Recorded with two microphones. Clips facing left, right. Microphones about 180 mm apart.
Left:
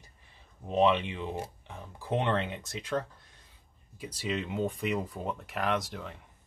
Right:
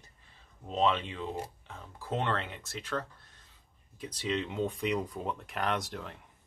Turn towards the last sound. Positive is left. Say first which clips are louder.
# left 2 dB
turn(degrees=0)  # may be behind; listen again after turning